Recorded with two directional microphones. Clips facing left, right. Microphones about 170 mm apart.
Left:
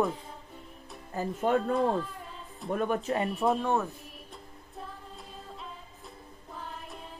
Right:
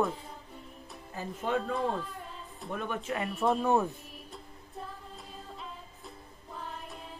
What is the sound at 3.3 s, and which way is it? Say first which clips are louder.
Speech: right 3 dB; centre (ahead or behind).